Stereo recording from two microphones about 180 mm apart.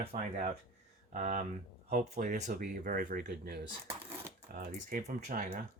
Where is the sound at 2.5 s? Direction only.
50° right (ahead or behind).